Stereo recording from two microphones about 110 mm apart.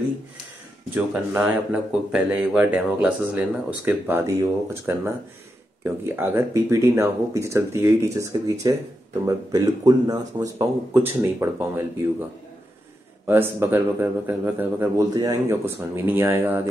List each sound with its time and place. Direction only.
0.9 s speech: 15° right (ahead or behind)
4.3 s speech: 25° right (ahead or behind)
13.3 s speech: 20° right (ahead or behind)
15.1 s a man's voice: 35° right (ahead or behind)
15.6 s speech: 25° right (ahead or behind)